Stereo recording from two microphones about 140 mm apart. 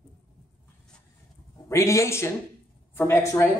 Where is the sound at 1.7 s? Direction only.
20° left (ahead or behind).